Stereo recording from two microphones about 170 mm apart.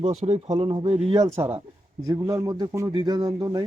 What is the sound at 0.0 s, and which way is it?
Speech, 40° right (ahead or behind).